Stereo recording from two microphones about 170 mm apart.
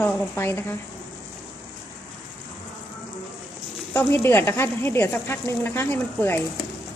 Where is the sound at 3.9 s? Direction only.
15° left (ahead or behind).